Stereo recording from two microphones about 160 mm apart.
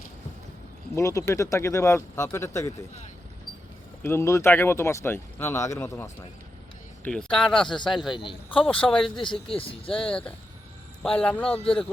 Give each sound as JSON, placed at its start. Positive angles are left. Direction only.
{"t": 0.9, "sound": "speech", "side_deg": 20}
{"t": 4.0, "sound": "speech", "side_deg": 15}
{"t": 7.0, "sound": "speech", "side_deg": 5}
{"t": 8.2, "sound": "speech", "side_deg": 30}
{"t": 8.6, "sound": "speech", "side_deg": 5}
{"t": 9.1, "sound": "speech", "side_deg": 30}
{"t": 10.1, "sound": "speech", "side_deg": 5}
{"t": 11.5, "sound": "speech", "side_deg": 35}